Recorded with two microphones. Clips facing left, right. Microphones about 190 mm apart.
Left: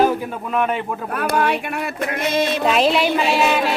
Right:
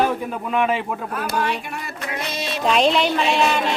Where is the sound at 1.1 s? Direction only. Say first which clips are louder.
Left 6 dB; 60° left (ahead or behind).